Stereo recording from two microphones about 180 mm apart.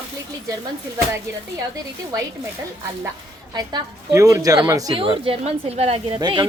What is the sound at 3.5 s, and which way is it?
A woman's voice, 20° right (ahead or behind).